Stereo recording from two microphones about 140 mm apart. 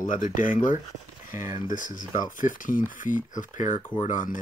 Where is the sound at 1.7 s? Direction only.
70° left (ahead or behind).